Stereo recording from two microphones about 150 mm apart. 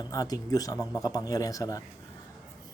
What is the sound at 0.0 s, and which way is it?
Speech, 25° left (ahead or behind).